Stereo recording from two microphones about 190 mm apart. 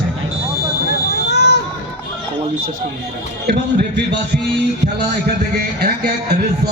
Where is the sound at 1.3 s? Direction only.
60° left (ahead or behind).